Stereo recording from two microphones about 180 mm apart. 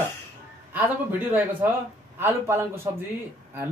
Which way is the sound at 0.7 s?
10° right (ahead or behind).